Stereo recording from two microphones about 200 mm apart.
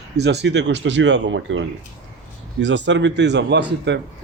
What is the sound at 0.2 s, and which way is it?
Speech, 60° right (ahead or behind).